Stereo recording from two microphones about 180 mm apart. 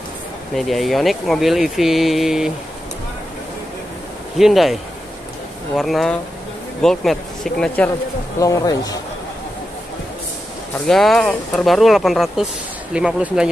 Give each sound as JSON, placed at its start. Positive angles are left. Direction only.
{"t": 0.6, "sound": "speech", "side_deg": 0}
{"t": 4.4, "sound": "speech", "side_deg": 0}
{"t": 5.8, "sound": "speech", "side_deg": 0}
{"t": 8.4, "sound": "speech", "side_deg": 20}
{"t": 10.9, "sound": "speech", "side_deg": 0}